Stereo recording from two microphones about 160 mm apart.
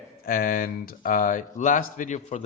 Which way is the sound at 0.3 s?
65° left (ahead or behind).